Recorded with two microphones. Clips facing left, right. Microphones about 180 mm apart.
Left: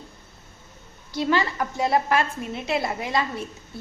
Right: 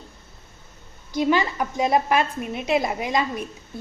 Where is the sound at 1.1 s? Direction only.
15° right (ahead or behind).